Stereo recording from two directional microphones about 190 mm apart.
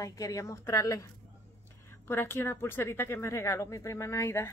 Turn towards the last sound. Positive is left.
turn(degrees=15)  # may be behind; listen again after turning